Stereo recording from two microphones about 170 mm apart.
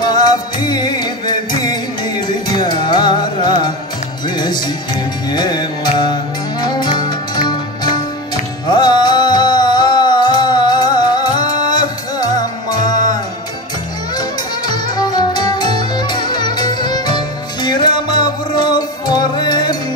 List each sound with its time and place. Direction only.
0.0 s music: 25° left (ahead or behind)
14.7 s music: 25° left (ahead or behind)